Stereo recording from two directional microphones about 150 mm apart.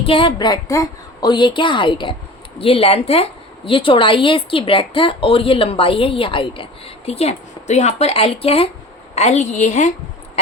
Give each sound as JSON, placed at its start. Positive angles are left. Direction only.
{"t": 0.0, "sound": "a woman's voice", "side_deg": 35}